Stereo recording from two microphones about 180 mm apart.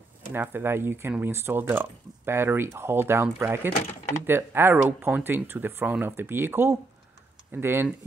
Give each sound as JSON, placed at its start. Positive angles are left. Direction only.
{"t": 0.3, "sound": "speech", "side_deg": -10}